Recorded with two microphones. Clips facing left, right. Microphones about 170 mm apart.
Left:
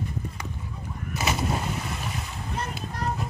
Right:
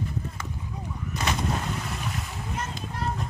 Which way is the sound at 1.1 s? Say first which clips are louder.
Left 1 dB; 5° left (ahead or behind).